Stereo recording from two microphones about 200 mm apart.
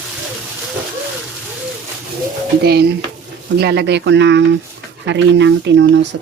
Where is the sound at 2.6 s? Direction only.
55° right (ahead or behind).